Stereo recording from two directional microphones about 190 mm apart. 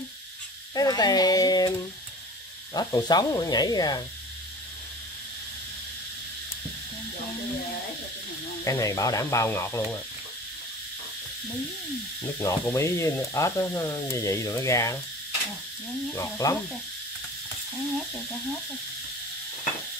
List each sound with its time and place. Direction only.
0.7 s speech: 20° left (ahead or behind)
2.7 s speech: 20° left (ahead or behind)
8.6 s sizzle: 15° left (ahead or behind)
12.2 s sizzle: 15° left (ahead or behind)
16.2 s sizzle: 15° left (ahead or behind)